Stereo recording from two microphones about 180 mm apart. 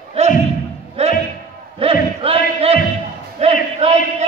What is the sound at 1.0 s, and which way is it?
Music, 35° right (ahead or behind).